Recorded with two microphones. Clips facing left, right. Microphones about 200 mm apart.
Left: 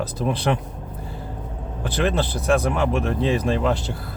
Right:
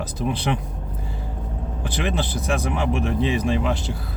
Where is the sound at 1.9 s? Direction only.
60° left (ahead or behind).